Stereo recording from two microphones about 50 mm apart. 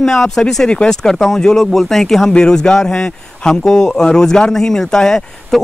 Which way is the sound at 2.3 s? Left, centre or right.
Centre.